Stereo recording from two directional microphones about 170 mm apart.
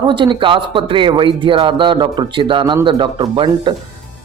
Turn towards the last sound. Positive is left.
turn(degrees=-30)  # may be behind; listen again after turning